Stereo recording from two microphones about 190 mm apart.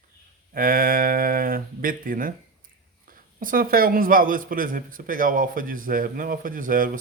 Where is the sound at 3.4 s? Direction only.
50° right (ahead or behind).